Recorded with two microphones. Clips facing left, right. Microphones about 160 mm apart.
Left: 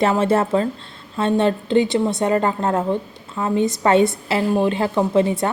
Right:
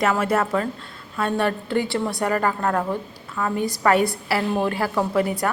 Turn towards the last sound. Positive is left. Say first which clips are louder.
# left 4 dB
turn(degrees=25)  # may be behind; listen again after turning